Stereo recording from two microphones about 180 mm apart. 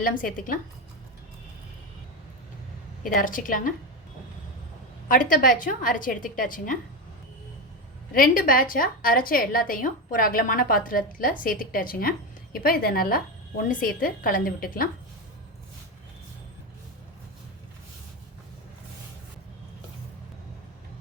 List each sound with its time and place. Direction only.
0.0 s a woman's voice: 50° left (ahead or behind)
3.0 s a woman's voice: 50° left (ahead or behind)
5.0 s a woman's voice: 50° left (ahead or behind)
8.1 s a woman's voice: 50° left (ahead or behind)